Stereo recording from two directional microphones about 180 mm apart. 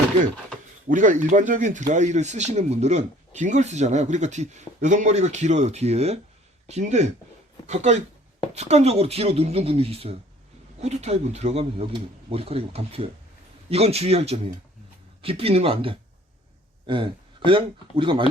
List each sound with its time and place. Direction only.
0.9 s speech: 45° right (ahead or behind); by 18.3 s 30° right (ahead or behind)